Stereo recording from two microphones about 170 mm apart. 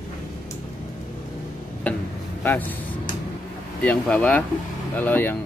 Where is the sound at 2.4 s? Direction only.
10° left (ahead or behind).